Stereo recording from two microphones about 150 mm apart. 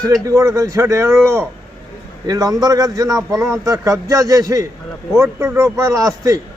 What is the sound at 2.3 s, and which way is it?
A man's voice, 25° right (ahead or behind).